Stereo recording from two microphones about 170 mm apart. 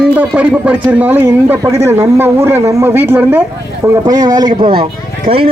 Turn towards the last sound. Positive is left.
turn(degrees=-55)  # may be behind; listen again after turning